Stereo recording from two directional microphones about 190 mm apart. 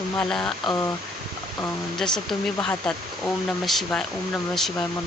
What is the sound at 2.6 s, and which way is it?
Speech, 5° left (ahead or behind).